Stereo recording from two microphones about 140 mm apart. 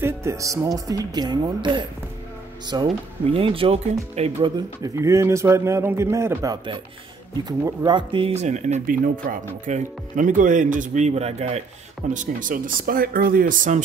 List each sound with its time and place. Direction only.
0.0 s a man's voice: 20° right (ahead or behind)
3.3 s speech: 40° right (ahead or behind)
4.8 s a man's voice: 20° right (ahead or behind); by 8.9 s 55° right (ahead or behind)
9.0 s speech: 80° right; by 11.6 s 50° right (ahead or behind)
12.1 s speech: 70° right (ahead or behind)